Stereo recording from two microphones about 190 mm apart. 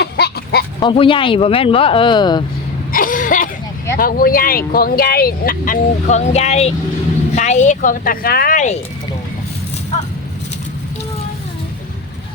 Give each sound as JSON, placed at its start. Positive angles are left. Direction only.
{"t": 0.0, "sound": "a sound", "side_deg": 60}
{"t": 0.8, "sound": "speech", "side_deg": 25}
{"t": 2.9, "sound": "cough", "side_deg": 45}
{"t": 3.9, "sound": "speech", "side_deg": 50}